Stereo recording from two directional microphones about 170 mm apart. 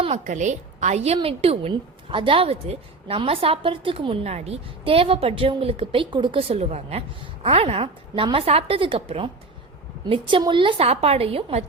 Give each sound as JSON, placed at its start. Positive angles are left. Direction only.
{"t": 0.0, "sound": "a woman's voice", "side_deg": -40}